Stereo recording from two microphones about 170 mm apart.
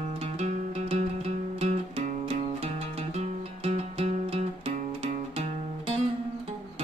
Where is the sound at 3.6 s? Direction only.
40° right (ahead or behind).